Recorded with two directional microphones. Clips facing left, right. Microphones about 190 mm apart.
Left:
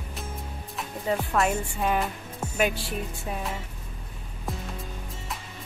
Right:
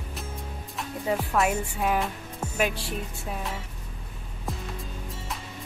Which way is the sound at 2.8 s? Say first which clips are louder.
Left 1 dB; centre (ahead or behind).